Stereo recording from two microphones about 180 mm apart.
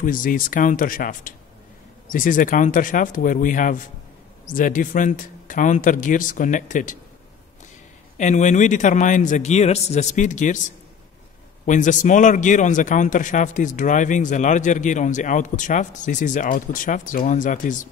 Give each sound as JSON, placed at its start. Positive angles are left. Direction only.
{"t": 0.0, "sound": "a man's voice", "side_deg": 50}
{"t": 8.2, "sound": "a man's voice", "side_deg": 40}
{"t": 11.6, "sound": "a man's voice", "side_deg": 45}